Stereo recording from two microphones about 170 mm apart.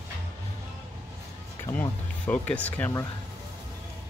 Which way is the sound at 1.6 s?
10° left (ahead or behind).